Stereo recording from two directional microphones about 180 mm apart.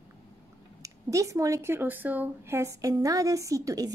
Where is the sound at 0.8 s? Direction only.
20° right (ahead or behind).